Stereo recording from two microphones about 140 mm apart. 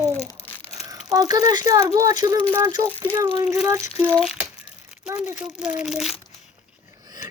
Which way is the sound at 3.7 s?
20° right (ahead or behind).